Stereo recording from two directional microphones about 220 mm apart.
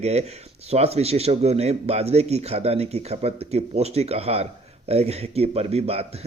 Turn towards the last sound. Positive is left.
turn(degrees=-25)  # may be behind; listen again after turning